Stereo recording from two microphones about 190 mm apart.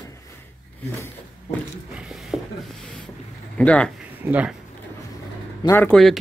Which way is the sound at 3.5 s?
5° left (ahead or behind).